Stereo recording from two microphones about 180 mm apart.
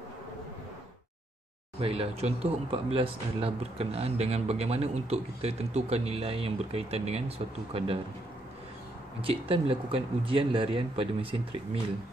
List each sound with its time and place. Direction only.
1.8 s speech: 35° right (ahead or behind)
9.2 s speech: 30° right (ahead or behind)